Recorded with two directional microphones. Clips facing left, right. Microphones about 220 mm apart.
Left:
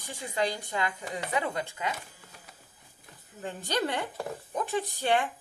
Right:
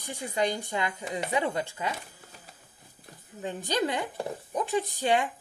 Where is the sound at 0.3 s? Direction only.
25° right (ahead or behind).